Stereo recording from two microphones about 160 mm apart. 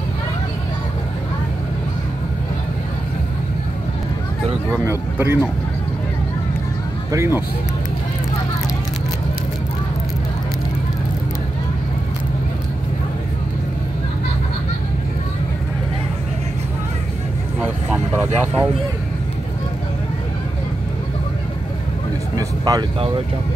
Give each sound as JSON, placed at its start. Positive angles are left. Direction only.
{"t": 4.6, "sound": "speech", "side_deg": -15}
{"t": 7.1, "sound": "speech", "side_deg": -15}
{"t": 17.6, "sound": "vehicle", "side_deg": -10}
{"t": 18.2, "sound": "speech", "side_deg": -10}
{"t": 22.3, "sound": "vehicle", "side_deg": -25}